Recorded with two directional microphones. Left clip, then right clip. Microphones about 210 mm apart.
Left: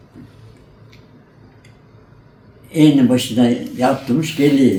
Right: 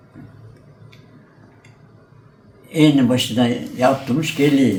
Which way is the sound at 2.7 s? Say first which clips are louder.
Left 2 dB; 15° right (ahead or behind).